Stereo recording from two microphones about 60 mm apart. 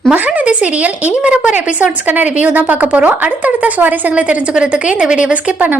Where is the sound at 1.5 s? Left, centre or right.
Right.